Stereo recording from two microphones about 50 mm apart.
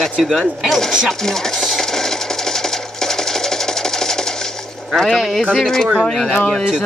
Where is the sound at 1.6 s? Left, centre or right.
Centre.